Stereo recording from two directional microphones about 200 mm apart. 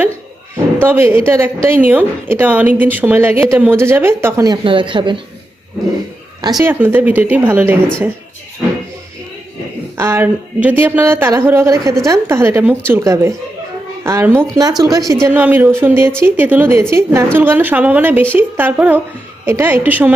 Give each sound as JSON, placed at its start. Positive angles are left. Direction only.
{"t": 0.5, "sound": "a woman's voice", "side_deg": -10}
{"t": 6.5, "sound": "a woman's voice", "side_deg": -10}
{"t": 10.0, "sound": "a woman's voice", "side_deg": -10}